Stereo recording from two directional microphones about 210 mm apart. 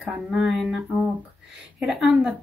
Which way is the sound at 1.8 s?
5° right (ahead or behind).